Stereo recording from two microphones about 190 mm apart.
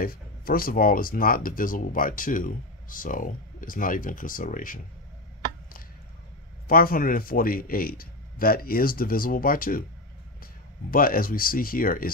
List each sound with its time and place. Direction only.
0.0 s speech: 50° left (ahead or behind)
6.7 s speech: 50° left (ahead or behind)